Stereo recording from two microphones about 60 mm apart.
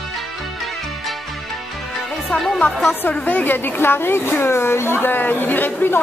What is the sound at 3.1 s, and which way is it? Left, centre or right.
A woman's voice, left.